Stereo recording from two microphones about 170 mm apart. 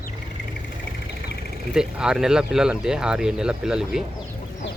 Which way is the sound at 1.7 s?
5° right (ahead or behind).